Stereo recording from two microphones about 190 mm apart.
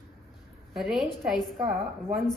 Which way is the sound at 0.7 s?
Centre (ahead or behind).